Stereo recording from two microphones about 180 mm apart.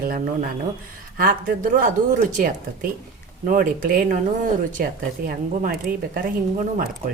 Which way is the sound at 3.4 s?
50° right (ahead or behind).